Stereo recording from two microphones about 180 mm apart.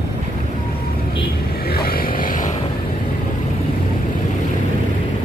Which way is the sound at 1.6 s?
55° left (ahead or behind).